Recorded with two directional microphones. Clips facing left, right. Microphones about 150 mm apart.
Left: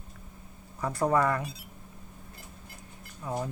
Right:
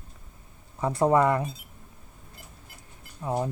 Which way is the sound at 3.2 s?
25° right (ahead or behind).